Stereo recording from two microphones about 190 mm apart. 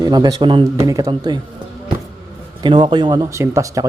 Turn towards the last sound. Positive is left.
turn(degrees=-15)  # may be behind; listen again after turning